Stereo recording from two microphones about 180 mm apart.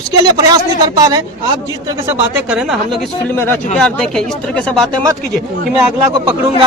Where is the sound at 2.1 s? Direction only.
5° right (ahead or behind).